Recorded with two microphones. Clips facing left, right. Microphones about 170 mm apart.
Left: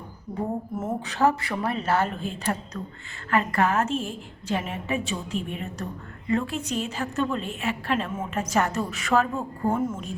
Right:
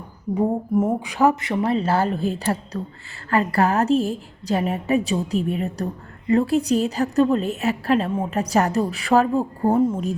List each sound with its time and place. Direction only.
1.0 s a woman's voice: 15° right (ahead or behind); by 10.2 s 35° right (ahead or behind)